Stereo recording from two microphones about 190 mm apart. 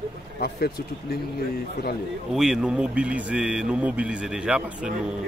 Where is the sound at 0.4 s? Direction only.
55° left (ahead or behind).